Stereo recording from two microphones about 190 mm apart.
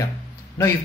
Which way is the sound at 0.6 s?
15° left (ahead or behind).